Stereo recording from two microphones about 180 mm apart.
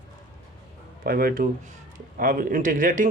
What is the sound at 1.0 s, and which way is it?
Speech, 55° right (ahead or behind).